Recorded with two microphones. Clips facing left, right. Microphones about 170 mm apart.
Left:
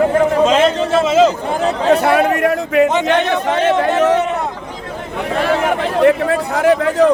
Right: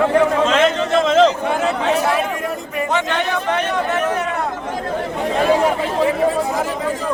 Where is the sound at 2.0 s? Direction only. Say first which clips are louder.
Left 6 dB; 65° left (ahead or behind).